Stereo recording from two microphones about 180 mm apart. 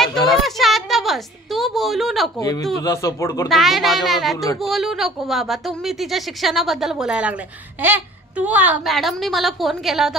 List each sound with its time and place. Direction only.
0.3 s a sound: centre (ahead or behind)
2.8 s speech: 15° left (ahead or behind)
3.4 s speech: centre (ahead or behind)